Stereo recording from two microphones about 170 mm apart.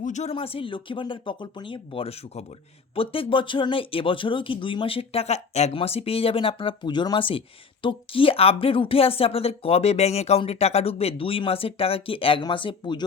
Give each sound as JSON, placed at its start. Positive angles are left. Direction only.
{"t": 0.0, "sound": "speech", "side_deg": 45}